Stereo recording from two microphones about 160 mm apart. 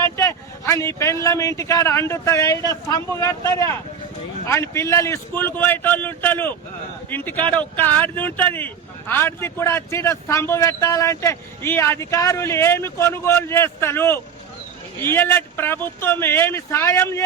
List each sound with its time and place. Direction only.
0.2 s speech: 15° left (ahead or behind)